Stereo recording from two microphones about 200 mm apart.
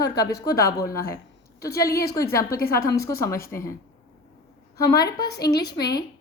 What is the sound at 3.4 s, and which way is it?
Speech, 45° left (ahead or behind).